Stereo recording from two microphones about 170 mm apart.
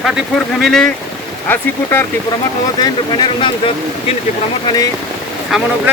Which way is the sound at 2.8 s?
25° left (ahead or behind).